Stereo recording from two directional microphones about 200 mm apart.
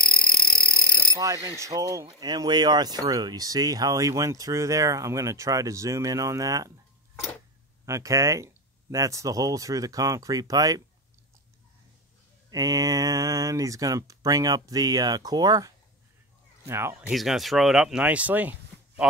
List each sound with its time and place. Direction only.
1.1 s speech: 15° right (ahead or behind)
7.8 s speech: 15° right (ahead or behind)
12.4 s speech: 20° right (ahead or behind)
17.1 s speech: centre (ahead or behind)